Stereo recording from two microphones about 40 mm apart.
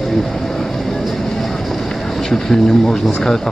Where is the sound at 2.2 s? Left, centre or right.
Centre.